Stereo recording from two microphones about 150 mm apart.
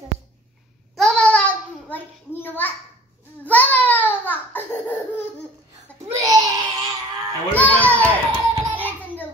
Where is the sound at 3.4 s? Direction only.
10° left (ahead or behind).